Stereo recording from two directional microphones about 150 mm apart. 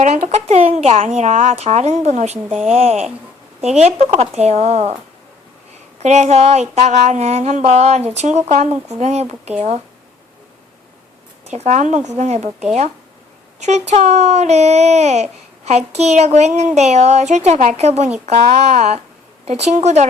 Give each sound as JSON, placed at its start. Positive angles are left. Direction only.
{"t": 0.0, "sound": "a child's voice", "side_deg": -45}
{"t": 2.5, "sound": "speech", "side_deg": -5}
{"t": 2.7, "sound": "a child's voice", "side_deg": -45}
{"t": 6.0, "sound": "a child's voice", "side_deg": -50}
{"t": 11.4, "sound": "a child's voice", "side_deg": -50}